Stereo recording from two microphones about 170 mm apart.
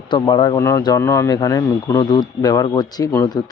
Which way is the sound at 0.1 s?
25° left (ahead or behind).